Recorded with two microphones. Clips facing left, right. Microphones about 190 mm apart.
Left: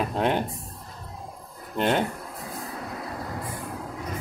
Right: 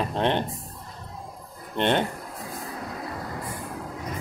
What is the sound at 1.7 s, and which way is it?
Speech, 5° left (ahead or behind).